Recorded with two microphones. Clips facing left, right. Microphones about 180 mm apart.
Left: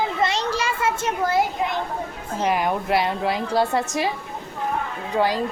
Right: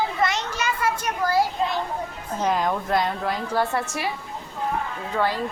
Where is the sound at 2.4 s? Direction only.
10° left (ahead or behind).